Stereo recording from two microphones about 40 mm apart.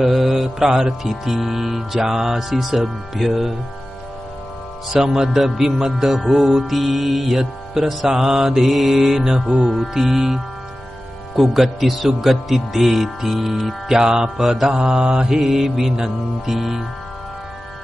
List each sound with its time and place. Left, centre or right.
0.0 s music: centre
4.9 s music: centre
14.0 s music: centre
14.4 s music: centre
14.8 s music: right; by 16.8 s centre